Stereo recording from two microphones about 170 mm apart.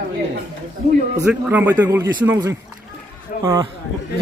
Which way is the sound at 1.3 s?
10° right (ahead or behind).